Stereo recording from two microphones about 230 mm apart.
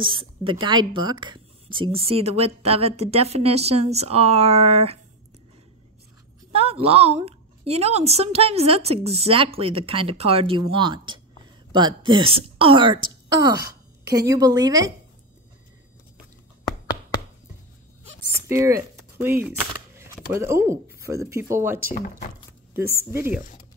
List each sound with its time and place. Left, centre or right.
0.0 s speech: right
6.5 s speech: right
13.6 s a sound: right
14.1 s a woman's voice: centre
18.5 s speech: centre
22.8 s a woman's voice: centre